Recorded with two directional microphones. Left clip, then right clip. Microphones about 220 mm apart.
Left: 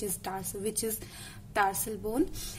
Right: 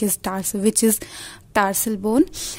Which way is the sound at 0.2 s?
45° right (ahead or behind).